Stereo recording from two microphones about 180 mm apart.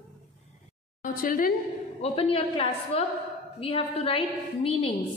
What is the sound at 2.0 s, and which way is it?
A woman's voice, 30° left (ahead or behind).